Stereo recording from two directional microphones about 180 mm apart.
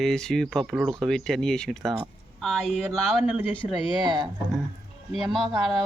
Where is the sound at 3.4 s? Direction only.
30° left (ahead or behind).